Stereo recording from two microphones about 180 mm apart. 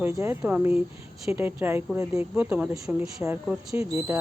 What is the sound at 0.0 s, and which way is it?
Speech, 10° right (ahead or behind).